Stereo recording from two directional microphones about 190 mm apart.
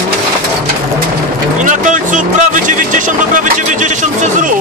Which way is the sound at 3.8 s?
40° right (ahead or behind).